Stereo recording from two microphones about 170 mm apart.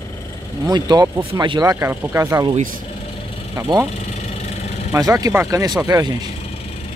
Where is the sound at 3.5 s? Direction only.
20° right (ahead or behind).